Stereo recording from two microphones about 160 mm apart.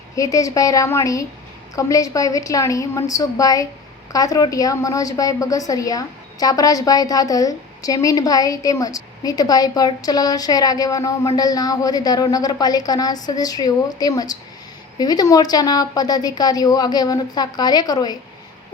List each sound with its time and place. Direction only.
0.2 s a woman's voice: 20° left (ahead or behind)